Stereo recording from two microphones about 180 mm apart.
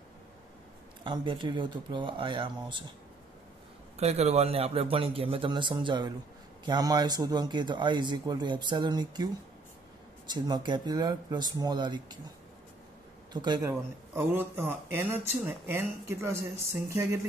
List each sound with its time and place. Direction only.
1.0 s speech: 25° right (ahead or behind)
3.9 s a man's voice: 35° right (ahead or behind)
10.3 s speech: 25° right (ahead or behind)
13.3 s speech: 25° right (ahead or behind)
13.7 s speech: 10° right (ahead or behind)